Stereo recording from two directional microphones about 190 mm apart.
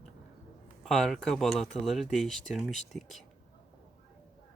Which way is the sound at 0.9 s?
Centre (ahead or behind).